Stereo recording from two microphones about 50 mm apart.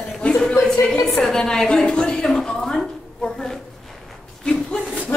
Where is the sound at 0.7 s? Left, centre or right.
Centre.